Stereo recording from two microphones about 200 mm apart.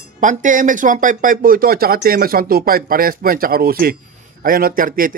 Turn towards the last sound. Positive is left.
turn(degrees=-45)  # may be behind; listen again after turning